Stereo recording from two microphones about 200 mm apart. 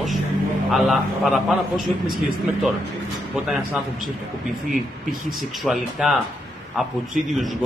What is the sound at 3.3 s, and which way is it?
Speech, 5° right (ahead or behind).